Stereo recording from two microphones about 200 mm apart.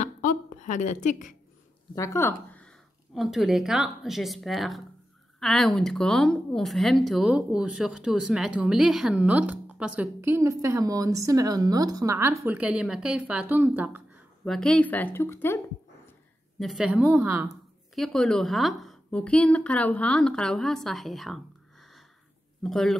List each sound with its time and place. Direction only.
0.0 s a sound: 40° left (ahead or behind)
2.0 s speech: 15° left (ahead or behind)
3.2 s speech: centre (ahead or behind)
14.4 s a woman's voice: centre (ahead or behind)
16.5 s speech: centre (ahead or behind)
22.6 s speech: centre (ahead or behind)